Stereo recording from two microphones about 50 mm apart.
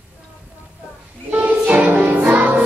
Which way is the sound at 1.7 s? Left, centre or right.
Right.